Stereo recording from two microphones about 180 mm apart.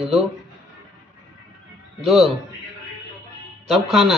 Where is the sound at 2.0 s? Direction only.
Centre (ahead or behind).